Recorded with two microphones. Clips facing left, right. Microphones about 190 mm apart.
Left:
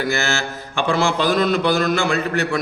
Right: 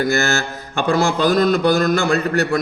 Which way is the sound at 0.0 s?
40° right (ahead or behind).